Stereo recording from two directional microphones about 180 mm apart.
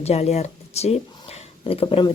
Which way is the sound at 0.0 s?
35° left (ahead or behind).